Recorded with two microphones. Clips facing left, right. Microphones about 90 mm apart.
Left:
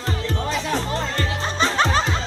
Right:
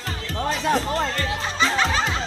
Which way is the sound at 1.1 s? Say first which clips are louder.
Left 1 dB; 35° left (ahead or behind).